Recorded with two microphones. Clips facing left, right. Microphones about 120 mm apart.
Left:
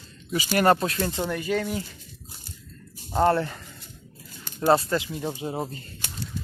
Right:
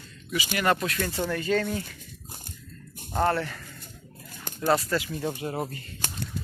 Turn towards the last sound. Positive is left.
turn(degrees=15)  # may be behind; listen again after turning